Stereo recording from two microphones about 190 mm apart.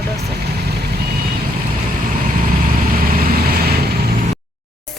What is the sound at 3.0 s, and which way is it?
Vehicle, 50° right (ahead or behind).